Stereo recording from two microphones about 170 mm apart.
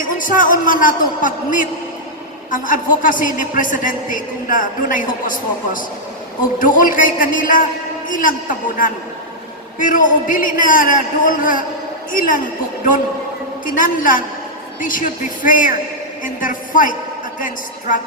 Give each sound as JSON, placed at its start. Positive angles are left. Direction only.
{"t": 0.0, "sound": "a man's voice", "side_deg": 50}
{"t": 13.7, "sound": "a man's voice", "side_deg": 55}